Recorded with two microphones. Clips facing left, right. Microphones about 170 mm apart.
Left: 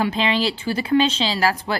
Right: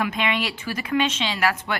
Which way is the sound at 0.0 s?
30° left (ahead or behind).